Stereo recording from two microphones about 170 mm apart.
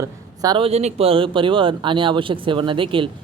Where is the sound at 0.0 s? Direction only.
25° right (ahead or behind).